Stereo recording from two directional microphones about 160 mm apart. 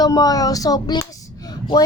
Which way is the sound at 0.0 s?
25° left (ahead or behind).